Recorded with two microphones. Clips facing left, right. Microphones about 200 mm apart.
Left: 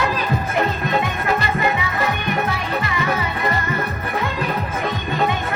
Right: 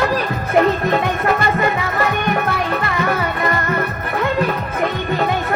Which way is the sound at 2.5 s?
55° right (ahead or behind).